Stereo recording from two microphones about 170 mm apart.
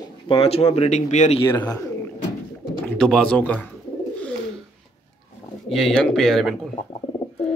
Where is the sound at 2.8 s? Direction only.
5° left (ahead or behind).